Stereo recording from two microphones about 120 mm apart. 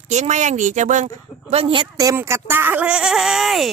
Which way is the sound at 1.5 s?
50° right (ahead or behind).